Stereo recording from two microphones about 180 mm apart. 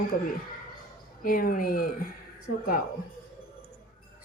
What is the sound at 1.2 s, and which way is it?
Speech, 50° left (ahead or behind).